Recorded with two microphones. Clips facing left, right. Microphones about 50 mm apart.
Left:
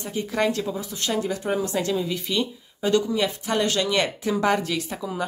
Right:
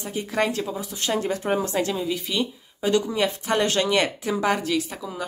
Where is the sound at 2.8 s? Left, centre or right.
Right.